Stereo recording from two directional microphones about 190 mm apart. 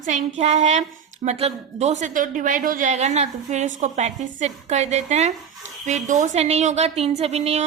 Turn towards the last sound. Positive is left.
turn(degrees=-35)  # may be behind; listen again after turning